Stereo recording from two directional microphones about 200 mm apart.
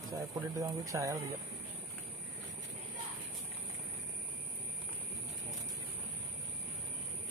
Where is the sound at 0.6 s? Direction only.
15° right (ahead or behind).